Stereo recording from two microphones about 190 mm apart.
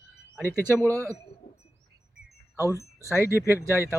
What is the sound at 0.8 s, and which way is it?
Speech, 10° left (ahead or behind).